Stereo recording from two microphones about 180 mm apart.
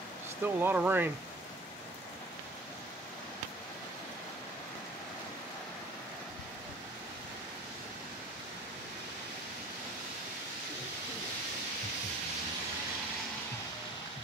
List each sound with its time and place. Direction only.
0.4 s speech: 10° right (ahead or behind)